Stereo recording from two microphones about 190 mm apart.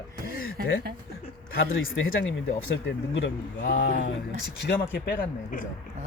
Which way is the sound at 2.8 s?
80° left.